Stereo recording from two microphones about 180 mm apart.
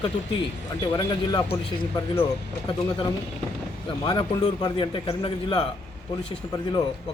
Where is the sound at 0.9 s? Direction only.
20° left (ahead or behind).